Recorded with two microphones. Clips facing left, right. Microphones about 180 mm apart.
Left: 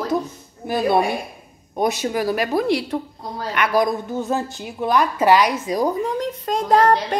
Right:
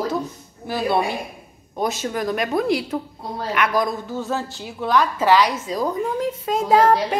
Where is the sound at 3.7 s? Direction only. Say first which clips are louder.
Left 3 dB; 15° left (ahead or behind).